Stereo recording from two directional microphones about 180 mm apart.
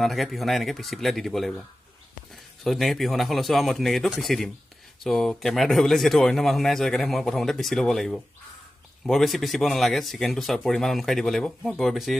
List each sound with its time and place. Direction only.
0.0 s speech: centre (ahead or behind)